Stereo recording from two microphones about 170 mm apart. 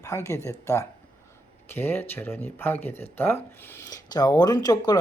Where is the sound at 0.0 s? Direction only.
15° left (ahead or behind).